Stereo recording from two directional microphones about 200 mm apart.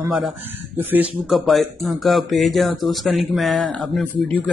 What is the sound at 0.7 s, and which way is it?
A man's voice, 10° right (ahead or behind).